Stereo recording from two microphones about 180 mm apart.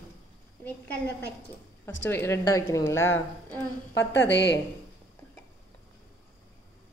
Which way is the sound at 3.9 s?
70° left (ahead or behind).